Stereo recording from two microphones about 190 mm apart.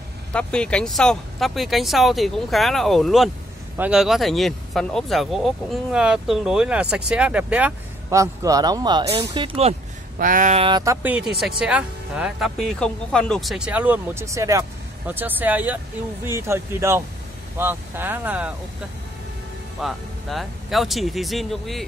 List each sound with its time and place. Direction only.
0.3 s speech: 5° left (ahead or behind); by 9.8 s 30° right (ahead or behind)
10.1 s speech: 45° right (ahead or behind)
10.6 s speech: 20° right (ahead or behind)
19.8 s speech: centre (ahead or behind)